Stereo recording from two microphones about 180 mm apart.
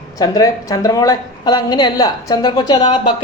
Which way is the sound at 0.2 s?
20° left (ahead or behind).